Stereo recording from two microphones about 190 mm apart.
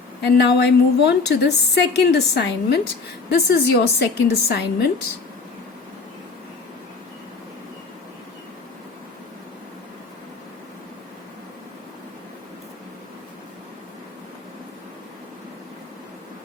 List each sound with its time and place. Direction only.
0.2 s a woman's voice: 60° left (ahead or behind)